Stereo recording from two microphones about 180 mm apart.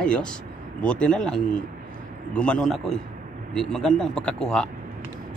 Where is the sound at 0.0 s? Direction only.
5° left (ahead or behind).